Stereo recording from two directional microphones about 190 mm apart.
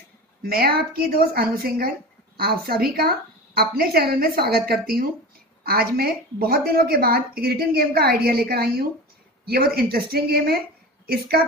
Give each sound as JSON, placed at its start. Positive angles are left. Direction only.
{"t": 0.4, "sound": "a woman's voice", "side_deg": -55}